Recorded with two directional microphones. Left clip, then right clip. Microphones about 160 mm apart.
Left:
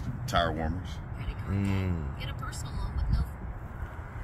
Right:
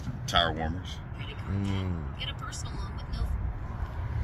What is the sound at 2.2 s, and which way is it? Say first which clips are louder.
Vehicle: right 3 dB; 15° right (ahead or behind).